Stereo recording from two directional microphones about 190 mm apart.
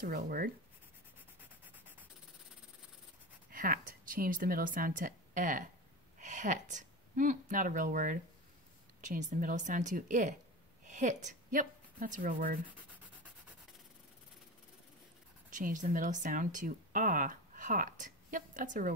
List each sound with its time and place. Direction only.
0.0 s a woman's voice: 50° right (ahead or behind)
3.5 s a woman's voice: 45° right (ahead or behind)
15.5 s speech: 40° right (ahead or behind)